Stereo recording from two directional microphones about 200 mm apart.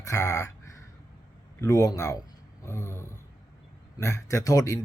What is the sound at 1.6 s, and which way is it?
Speech, 15° left (ahead or behind).